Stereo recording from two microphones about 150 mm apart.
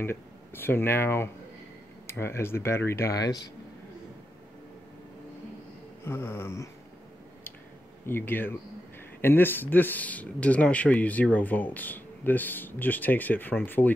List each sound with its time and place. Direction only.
0.0 s speech: 15° left (ahead or behind)
6.0 s speech: 15° left (ahead or behind)
8.1 s speech: 15° left (ahead or behind)